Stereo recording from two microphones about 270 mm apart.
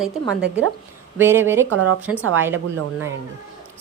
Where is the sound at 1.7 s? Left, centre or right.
Right.